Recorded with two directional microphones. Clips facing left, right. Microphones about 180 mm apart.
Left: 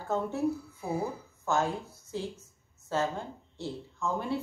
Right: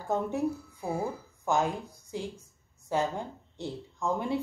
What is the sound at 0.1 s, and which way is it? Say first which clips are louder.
A woman's voice: even; 15° right (ahead or behind).